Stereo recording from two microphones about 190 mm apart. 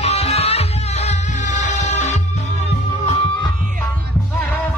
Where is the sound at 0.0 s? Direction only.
30° left (ahead or behind).